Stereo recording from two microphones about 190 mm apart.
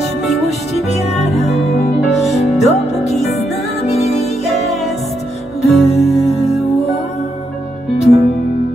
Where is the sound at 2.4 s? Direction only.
35° left (ahead or behind).